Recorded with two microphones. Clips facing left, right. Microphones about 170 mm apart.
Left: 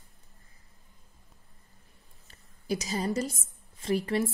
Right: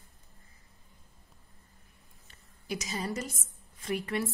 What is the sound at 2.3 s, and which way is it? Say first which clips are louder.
A woman's voice: left 6 dB; 35° left (ahead or behind).